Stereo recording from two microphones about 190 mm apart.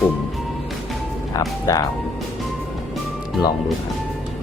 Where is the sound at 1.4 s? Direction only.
15° left (ahead or behind).